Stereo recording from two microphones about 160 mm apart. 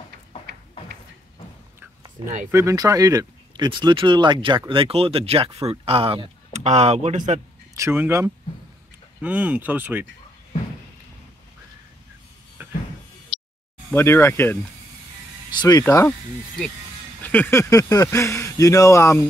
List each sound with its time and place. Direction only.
2.2 s speech: 30° right (ahead or behind)
7.7 s speech: 15° right (ahead or behind)
13.9 s speech: 15° left (ahead or behind)
15.5 s speech: 25° left (ahead or behind)
15.8 s speech: 15° left (ahead or behind)
17.2 s speech: 10° left (ahead or behind)